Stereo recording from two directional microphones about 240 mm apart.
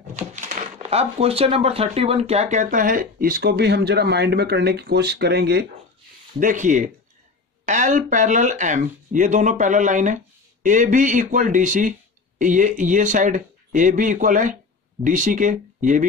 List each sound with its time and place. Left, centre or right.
0.1 s speech: right
6.4 s speech: right